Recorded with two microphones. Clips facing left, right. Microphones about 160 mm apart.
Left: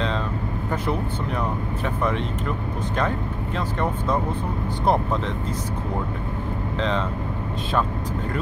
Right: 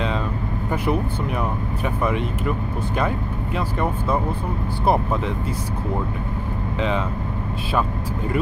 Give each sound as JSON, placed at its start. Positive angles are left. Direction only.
{"t": 2.0, "sound": "speech", "side_deg": -10}
{"t": 4.8, "sound": "speech", "side_deg": -10}